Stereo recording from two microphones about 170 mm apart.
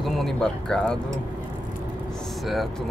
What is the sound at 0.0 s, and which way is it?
Speech, 5° left (ahead or behind).